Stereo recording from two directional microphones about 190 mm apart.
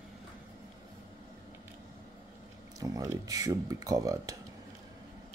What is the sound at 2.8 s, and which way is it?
Speech, 20° right (ahead or behind).